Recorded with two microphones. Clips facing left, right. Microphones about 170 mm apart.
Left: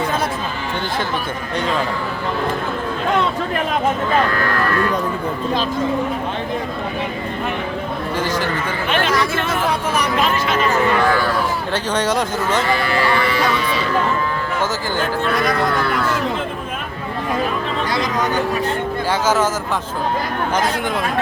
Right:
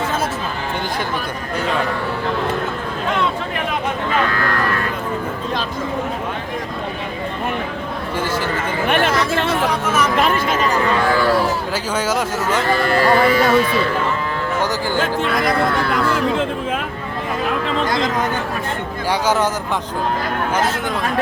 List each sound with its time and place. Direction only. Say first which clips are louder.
8.9 s speech: right 1 dB; 60° right (ahead or behind)
10.2 s speech: right 1 dB; 45° right (ahead or behind)
11.7 s speech: left 1 dB; 5° right (ahead or behind)
12.7 s speech: right 3 dB; 45° right (ahead or behind)